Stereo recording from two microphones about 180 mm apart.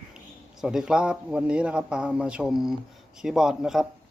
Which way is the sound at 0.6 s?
5° right (ahead or behind).